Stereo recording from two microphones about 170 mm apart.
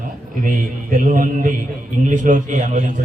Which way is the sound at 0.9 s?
50° right (ahead or behind).